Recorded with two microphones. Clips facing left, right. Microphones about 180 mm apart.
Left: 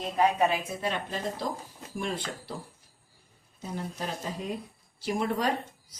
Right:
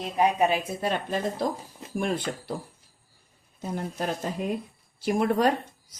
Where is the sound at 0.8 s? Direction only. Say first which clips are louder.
Right 4 dB; 50° right (ahead or behind).